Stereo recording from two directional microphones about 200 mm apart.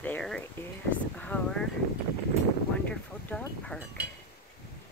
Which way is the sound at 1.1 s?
5° left (ahead or behind).